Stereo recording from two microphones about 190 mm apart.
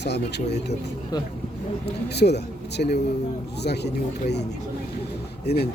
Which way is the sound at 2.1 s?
60° left (ahead or behind).